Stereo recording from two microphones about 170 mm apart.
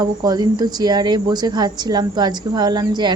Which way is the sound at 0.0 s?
25° right (ahead or behind).